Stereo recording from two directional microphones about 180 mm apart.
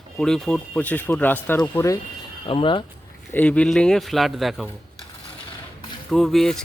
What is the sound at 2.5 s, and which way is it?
Speech, 30° left (ahead or behind).